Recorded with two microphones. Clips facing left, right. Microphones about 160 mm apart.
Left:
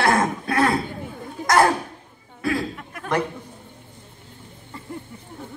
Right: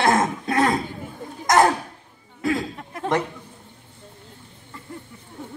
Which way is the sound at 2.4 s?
25° right (ahead or behind).